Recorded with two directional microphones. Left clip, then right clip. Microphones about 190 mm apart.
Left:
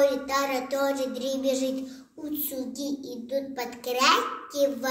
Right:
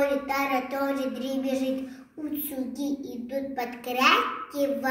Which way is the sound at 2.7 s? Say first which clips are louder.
Right 1 dB; 20° left (ahead or behind).